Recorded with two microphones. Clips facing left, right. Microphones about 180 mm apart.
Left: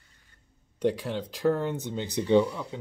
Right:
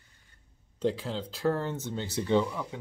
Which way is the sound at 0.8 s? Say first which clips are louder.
Left 3 dB; 15° left (ahead or behind).